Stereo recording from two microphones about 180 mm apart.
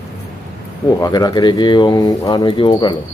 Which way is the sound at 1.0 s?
20° left (ahead or behind).